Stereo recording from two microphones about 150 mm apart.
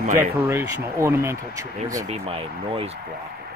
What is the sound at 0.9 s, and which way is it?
Speech, 15° right (ahead or behind).